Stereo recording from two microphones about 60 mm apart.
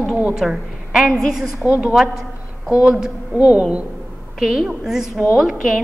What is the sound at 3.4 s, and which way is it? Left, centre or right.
Speech, right.